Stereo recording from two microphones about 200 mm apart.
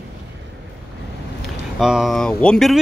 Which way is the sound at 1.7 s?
Centre (ahead or behind).